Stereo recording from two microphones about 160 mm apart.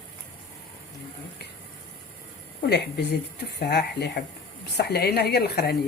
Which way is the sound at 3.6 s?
90° left.